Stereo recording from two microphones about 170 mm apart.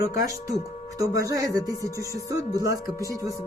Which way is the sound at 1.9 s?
20° left (ahead or behind).